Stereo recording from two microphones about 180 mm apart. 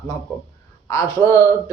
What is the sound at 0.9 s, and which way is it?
Speech, 15° left (ahead or behind).